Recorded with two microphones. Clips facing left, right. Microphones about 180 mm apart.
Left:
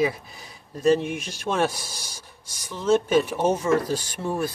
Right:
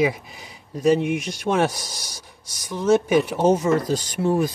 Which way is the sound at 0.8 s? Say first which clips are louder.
Right 2 dB; 15° right (ahead or behind).